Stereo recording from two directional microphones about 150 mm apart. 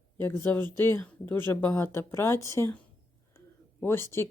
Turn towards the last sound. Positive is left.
turn(degrees=15)  # may be behind; listen again after turning